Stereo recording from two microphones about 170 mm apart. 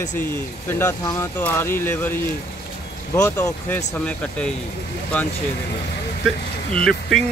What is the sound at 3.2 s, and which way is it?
Speech, 15° left (ahead or behind).